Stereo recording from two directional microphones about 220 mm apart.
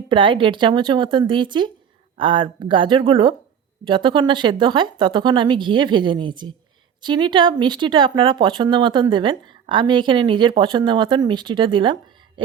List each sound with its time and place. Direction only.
0.1 s speech: 25° right (ahead or behind)